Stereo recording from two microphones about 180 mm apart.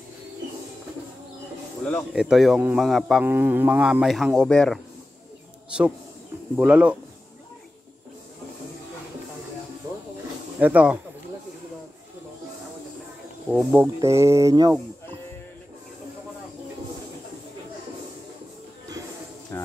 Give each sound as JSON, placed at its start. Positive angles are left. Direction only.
{"t": 1.9, "sound": "speech", "side_deg": 5}
{"t": 3.3, "sound": "speech", "side_deg": -10}
{"t": 6.5, "sound": "speech", "side_deg": -5}
{"t": 10.6, "sound": "speech", "side_deg": -5}
{"t": 13.5, "sound": "speech", "side_deg": -10}
{"t": 19.5, "sound": "bird", "side_deg": 15}